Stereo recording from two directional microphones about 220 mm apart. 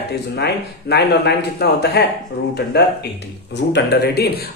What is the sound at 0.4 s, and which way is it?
A man's voice, 50° left (ahead or behind).